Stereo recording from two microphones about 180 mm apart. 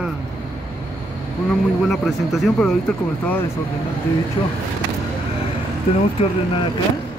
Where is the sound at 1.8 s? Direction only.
Centre (ahead or behind).